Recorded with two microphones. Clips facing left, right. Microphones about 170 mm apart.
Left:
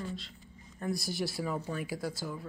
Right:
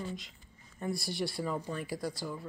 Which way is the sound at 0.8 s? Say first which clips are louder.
Left 1 dB; centre (ahead or behind).